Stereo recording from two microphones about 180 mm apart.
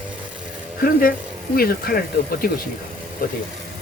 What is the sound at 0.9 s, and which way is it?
Speech, 55° left (ahead or behind).